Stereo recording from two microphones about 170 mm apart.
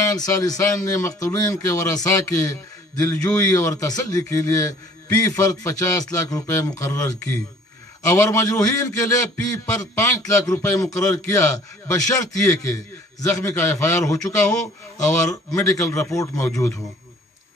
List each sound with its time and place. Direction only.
0.2 s a man's voice: 20° left (ahead or behind)